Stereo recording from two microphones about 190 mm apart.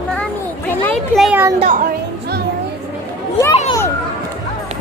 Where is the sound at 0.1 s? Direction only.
10° left (ahead or behind).